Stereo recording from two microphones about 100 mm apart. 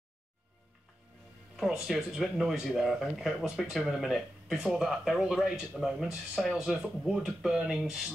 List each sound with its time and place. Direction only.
1.6 s speech: 5° right (ahead or behind)